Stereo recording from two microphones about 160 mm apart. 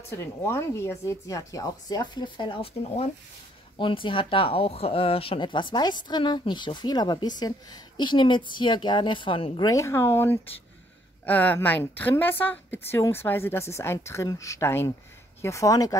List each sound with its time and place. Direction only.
0.1 s a woman's voice: 15° left (ahead or behind)